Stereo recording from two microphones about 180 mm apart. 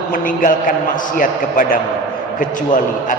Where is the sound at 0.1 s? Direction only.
50° left (ahead or behind).